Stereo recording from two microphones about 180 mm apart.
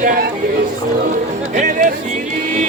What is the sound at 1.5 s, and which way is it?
Music, 45° right (ahead or behind).